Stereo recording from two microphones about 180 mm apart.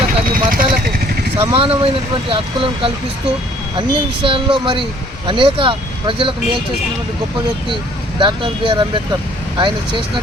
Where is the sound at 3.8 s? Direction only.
30° right (ahead or behind).